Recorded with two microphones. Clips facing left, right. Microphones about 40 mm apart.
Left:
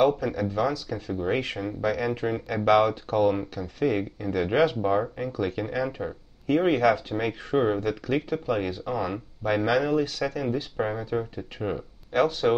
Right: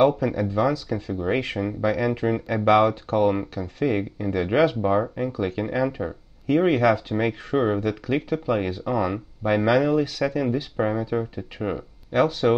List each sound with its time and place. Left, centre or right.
0.0 s speech: centre
1.0 s speech: centre
7.8 s speech: centre
10.2 s speech: right
10.5 s speech: centre